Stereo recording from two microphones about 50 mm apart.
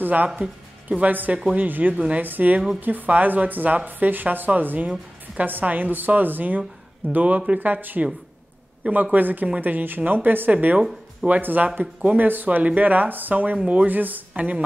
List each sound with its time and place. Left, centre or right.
0.0 s a woman's voice: right
13.8 s a woman's voice: right